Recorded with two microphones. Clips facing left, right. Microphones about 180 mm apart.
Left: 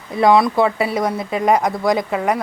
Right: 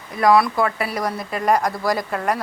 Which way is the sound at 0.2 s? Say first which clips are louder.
Left 3 dB; 25° left (ahead or behind).